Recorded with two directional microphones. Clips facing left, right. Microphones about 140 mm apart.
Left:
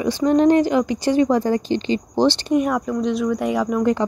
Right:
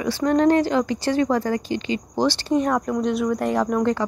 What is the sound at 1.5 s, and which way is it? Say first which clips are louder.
Speech: left 4 dB; 30° left (ahead or behind).